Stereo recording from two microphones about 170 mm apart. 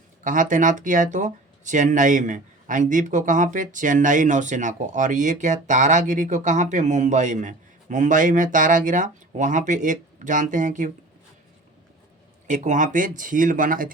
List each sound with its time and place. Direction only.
0.3 s speech: 50° right (ahead or behind)
12.5 s speech: 45° right (ahead or behind)